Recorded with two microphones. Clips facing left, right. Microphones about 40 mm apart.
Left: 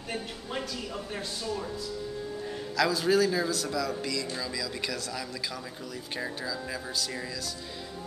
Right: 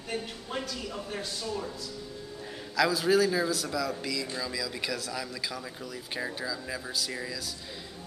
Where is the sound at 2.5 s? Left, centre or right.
Centre.